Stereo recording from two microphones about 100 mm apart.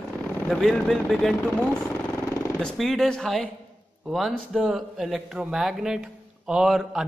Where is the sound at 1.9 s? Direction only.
30° left (ahead or behind).